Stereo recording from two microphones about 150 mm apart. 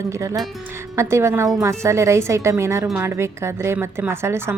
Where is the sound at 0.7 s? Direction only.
20° right (ahead or behind).